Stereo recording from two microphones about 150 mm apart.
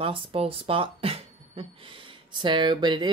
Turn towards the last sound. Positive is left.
turn(degrees=-30)  # may be behind; listen again after turning